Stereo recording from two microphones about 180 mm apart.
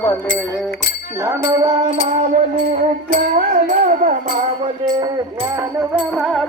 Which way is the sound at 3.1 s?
45° right (ahead or behind).